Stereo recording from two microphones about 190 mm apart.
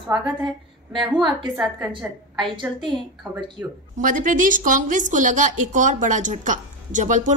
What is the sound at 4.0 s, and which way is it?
A woman's voice, 45° right (ahead or behind).